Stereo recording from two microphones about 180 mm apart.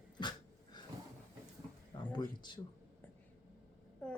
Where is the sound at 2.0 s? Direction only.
25° left (ahead or behind).